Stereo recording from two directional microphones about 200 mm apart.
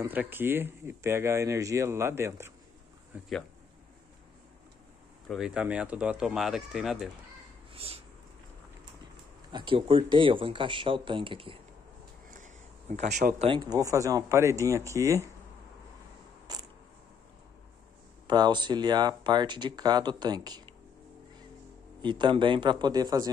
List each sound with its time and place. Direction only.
0.0 s speech: 10° right (ahead or behind)
5.3 s speech: 5° right (ahead or behind)
7.7 s a sound: 30° right (ahead or behind)
9.5 s speech: 25° right (ahead or behind)
12.3 s a sound: 40° right (ahead or behind)
13.5 s speech: 20° right (ahead or behind)
16.5 s a sound: 20° right (ahead or behind)
18.2 s speech: 20° right (ahead or behind)
22.0 s speech: 20° right (ahead or behind)